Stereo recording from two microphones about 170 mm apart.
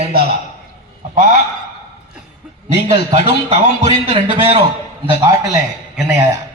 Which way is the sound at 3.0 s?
30° right (ahead or behind).